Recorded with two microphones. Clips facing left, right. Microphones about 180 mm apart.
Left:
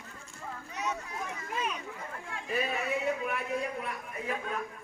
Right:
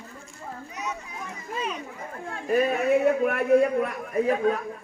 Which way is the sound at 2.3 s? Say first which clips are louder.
Right 10 dB; 50° right (ahead or behind).